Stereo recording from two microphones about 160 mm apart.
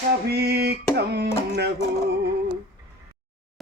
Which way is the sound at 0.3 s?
80° right.